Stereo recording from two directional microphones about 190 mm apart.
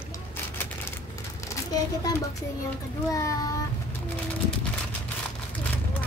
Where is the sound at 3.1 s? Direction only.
15° left (ahead or behind).